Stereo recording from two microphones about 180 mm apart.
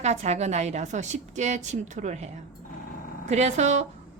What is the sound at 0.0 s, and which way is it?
A woman's voice, 40° right (ahead or behind).